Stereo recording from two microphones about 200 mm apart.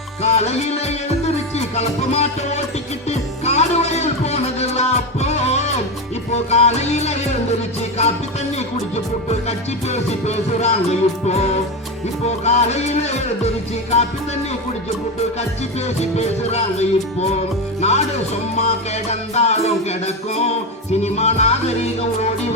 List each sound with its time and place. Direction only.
0.2 s music: 35° left (ahead or behind)
9.5 s music: 35° left (ahead or behind)
16.1 s music: 35° left (ahead or behind)